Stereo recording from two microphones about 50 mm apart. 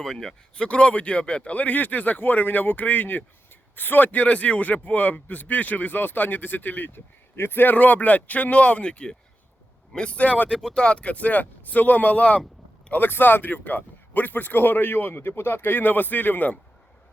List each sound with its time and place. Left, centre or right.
0.0 s speech: centre
0.5 s speech: left
7.3 s a man's voice: left
7.6 s speech: left
10.5 s speech: centre
10.8 s speech: left
13.1 s speech: left